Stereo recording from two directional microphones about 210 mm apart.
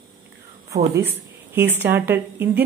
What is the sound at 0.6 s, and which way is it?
Speech, 15° right (ahead or behind).